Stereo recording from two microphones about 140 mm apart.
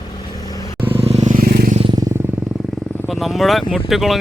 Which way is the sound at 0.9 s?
50° right (ahead or behind).